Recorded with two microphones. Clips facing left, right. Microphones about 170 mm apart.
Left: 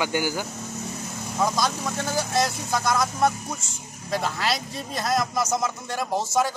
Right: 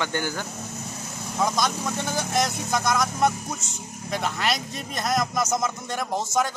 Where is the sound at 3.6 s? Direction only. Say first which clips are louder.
Right 4 dB; 20° right (ahead or behind).